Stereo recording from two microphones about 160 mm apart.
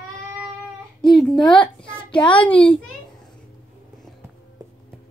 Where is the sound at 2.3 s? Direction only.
10° left (ahead or behind).